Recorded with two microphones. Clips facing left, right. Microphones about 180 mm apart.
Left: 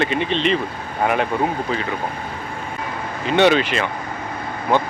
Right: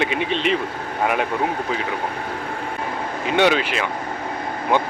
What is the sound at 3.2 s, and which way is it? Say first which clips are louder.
Speech: left 3 dB; 5° right (ahead or behind).